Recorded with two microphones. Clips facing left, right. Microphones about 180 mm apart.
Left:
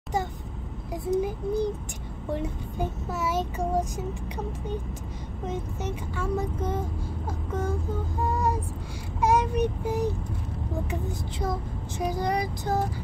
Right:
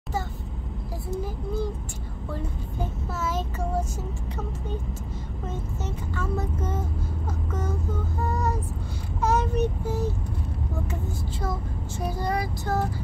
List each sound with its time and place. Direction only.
1.1 s child singing: 15° left (ahead or behind)
5.5 s child singing: 15° left (ahead or behind)
8.2 s vehicle: 10° left (ahead or behind)
9.2 s child singing: 10° left (ahead or behind)